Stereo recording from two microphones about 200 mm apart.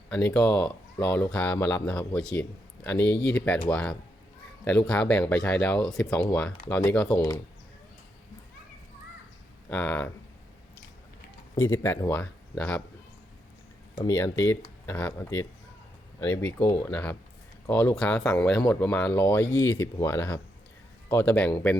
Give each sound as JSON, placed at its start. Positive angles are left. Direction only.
{"t": 0.1, "sound": "speech", "side_deg": 5}
{"t": 9.6, "sound": "speech", "side_deg": 5}
{"t": 11.5, "sound": "speech", "side_deg": 10}
{"t": 14.0, "sound": "speech", "side_deg": 15}